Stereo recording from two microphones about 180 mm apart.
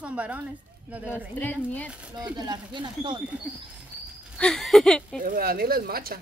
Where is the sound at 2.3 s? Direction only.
25° right (ahead or behind).